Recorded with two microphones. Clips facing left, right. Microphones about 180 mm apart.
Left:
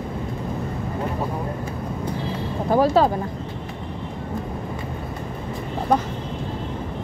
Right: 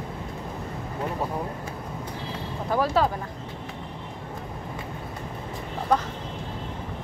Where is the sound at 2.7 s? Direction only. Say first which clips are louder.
Left 6 dB; 30° left (ahead or behind).